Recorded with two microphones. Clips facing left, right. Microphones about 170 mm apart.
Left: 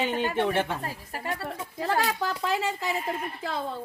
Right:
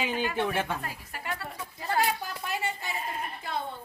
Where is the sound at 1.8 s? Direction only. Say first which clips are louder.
Left 2 dB; 90° left.